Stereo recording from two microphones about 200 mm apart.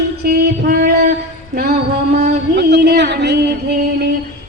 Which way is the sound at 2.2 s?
55° right (ahead or behind).